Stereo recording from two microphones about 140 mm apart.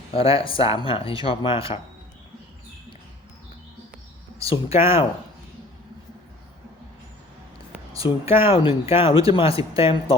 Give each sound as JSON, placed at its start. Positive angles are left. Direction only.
{"t": 0.1, "sound": "speech", "side_deg": 40}
{"t": 4.4, "sound": "speech", "side_deg": 45}
{"t": 8.0, "sound": "speech", "side_deg": 35}